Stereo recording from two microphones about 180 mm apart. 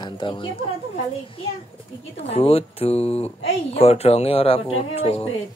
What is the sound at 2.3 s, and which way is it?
Speech, 35° left (ahead or behind).